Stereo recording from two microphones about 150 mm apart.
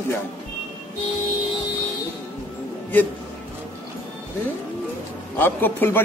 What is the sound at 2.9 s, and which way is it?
Speech, 10° left (ahead or behind).